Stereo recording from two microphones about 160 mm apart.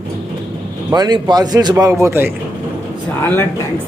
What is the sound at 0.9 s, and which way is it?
A man's voice, 25° right (ahead or behind).